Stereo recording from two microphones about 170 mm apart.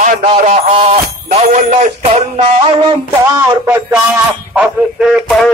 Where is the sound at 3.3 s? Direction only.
10° right (ahead or behind).